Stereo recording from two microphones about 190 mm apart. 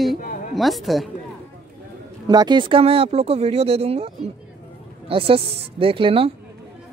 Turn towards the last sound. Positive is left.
turn(degrees=-30)  # may be behind; listen again after turning